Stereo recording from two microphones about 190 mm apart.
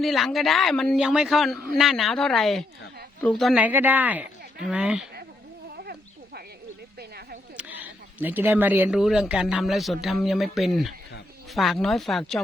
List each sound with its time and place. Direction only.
0.0 s speech: centre (ahead or behind)
3.5 s a woman's voice: 10° right (ahead or behind)
5.7 s a sound: 55° right (ahead or behind)
7.5 s speech: 10° right (ahead or behind)